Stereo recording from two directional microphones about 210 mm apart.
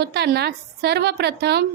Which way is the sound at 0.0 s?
50° right (ahead or behind).